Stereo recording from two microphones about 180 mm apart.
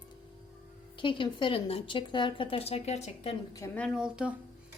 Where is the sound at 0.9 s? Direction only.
25° left (ahead or behind).